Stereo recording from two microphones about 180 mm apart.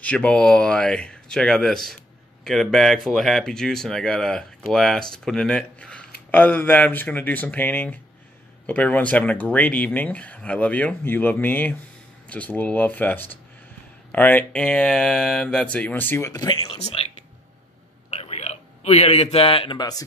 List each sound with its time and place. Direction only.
0.0 s speech: 10° left (ahead or behind)
16.6 s speech: 35° left (ahead or behind)
18.1 s a sound: 35° left (ahead or behind)